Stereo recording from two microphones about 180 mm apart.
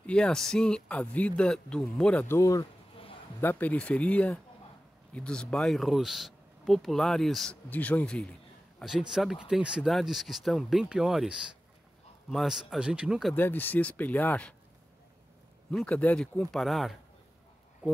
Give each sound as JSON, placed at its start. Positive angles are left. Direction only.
{"t": 0.0, "sound": "speech", "side_deg": 5}
{"t": 13.4, "sound": "speech", "side_deg": 10}
{"t": 15.7, "sound": "speech", "side_deg": 5}